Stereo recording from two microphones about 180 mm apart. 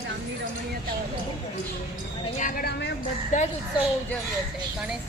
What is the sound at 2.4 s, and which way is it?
Speech, 60° left (ahead or behind).